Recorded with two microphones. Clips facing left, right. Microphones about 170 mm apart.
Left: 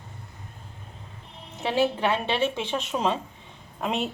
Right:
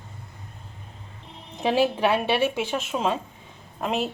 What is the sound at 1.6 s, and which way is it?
A woman's voice, 15° right (ahead or behind).